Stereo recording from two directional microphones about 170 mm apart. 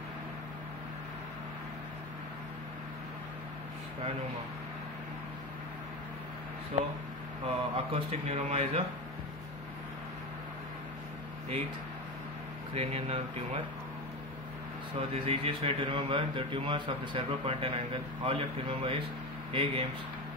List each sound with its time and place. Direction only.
7.4 s a man's voice: 35° right (ahead or behind)
12.7 s a man's voice: 35° right (ahead or behind)
15.2 s a man's voice: 35° right (ahead or behind)